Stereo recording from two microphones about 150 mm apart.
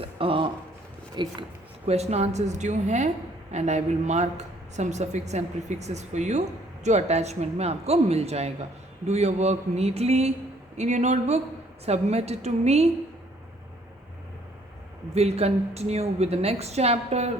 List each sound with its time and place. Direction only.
0.0 s a sound: 35° right (ahead or behind)
1.1 s speech: 30° right (ahead or behind)
1.9 s a woman's voice: 45° right (ahead or behind)
15.1 s a woman's voice: 45° right (ahead or behind)